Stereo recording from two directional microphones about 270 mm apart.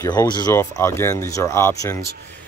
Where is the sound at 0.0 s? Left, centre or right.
Centre.